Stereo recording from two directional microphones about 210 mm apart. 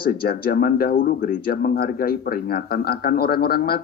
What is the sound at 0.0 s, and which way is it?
Speech, 45° left (ahead or behind).